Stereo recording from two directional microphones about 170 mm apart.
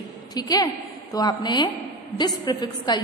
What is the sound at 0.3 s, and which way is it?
A woman's voice, 25° left (ahead or behind).